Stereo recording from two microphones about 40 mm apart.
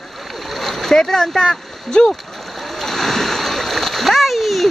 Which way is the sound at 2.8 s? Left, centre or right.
Centre.